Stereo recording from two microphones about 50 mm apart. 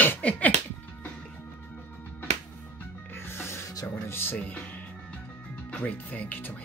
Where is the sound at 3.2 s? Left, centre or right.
Left.